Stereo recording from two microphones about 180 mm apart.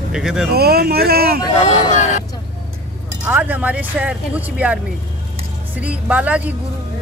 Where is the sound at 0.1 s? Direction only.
5° right (ahead or behind).